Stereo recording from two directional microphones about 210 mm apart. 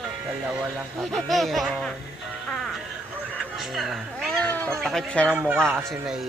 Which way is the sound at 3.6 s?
Centre (ahead or behind).